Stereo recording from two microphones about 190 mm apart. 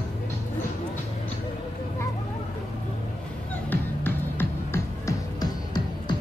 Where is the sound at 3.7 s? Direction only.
10° left (ahead or behind).